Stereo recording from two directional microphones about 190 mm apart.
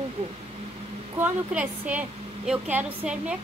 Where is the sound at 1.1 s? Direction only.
10° right (ahead or behind).